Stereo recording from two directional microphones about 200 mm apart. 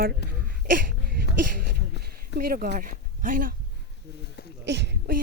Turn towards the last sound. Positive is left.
turn(degrees=-60)  # may be behind; listen again after turning